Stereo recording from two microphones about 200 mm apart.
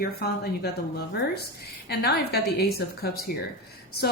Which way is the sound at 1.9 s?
55° left (ahead or behind).